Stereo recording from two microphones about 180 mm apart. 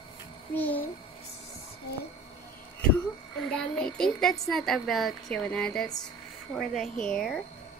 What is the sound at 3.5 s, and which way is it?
A woman's voice, 5° left (ahead or behind).